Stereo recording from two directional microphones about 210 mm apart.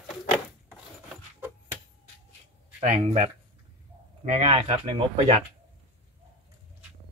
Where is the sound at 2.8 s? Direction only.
35° right (ahead or behind).